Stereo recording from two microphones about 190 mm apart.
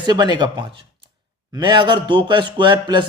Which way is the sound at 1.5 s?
25° right (ahead or behind).